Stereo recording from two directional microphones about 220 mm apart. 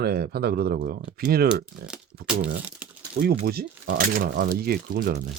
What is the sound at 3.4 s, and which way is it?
Speech, 40° right (ahead or behind).